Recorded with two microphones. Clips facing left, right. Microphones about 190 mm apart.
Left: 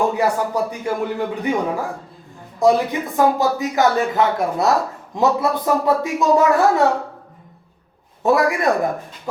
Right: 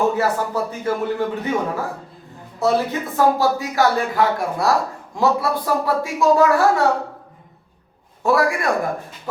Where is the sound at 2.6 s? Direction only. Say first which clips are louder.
Left 3 dB; 15° left (ahead or behind).